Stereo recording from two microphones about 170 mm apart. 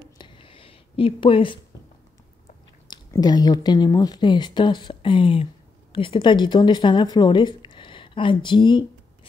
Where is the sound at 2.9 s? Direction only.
25° left (ahead or behind).